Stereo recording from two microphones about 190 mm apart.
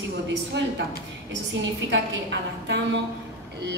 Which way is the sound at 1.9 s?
65° right (ahead or behind).